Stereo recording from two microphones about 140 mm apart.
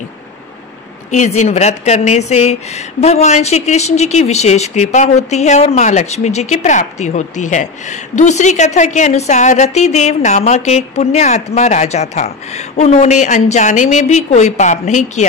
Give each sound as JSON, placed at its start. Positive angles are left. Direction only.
{"t": 1.1, "sound": "speech", "side_deg": 55}